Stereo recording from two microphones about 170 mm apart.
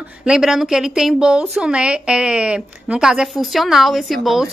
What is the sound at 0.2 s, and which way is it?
A woman's voice, 5° right (ahead or behind).